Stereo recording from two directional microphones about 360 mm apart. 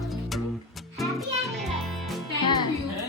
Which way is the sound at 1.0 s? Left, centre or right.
Centre.